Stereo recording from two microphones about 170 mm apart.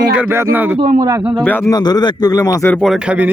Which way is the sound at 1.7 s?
25° left (ahead or behind).